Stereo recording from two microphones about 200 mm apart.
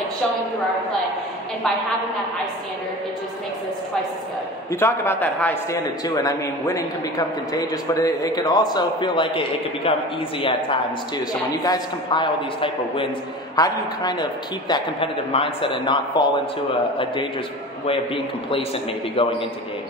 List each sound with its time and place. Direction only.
4.6 s a man's voice: 10° left (ahead or behind); by 10.0 s 30° left (ahead or behind)
11.6 s a man's voice: 20° left (ahead or behind)
17.8 s a man's voice: 25° left (ahead or behind)